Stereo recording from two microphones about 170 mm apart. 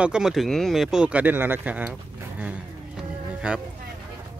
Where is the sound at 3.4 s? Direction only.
5° right (ahead or behind).